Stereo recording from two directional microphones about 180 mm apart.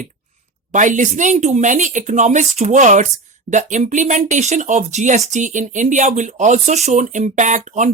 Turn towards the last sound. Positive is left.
turn(degrees=-45)  # may be behind; listen again after turning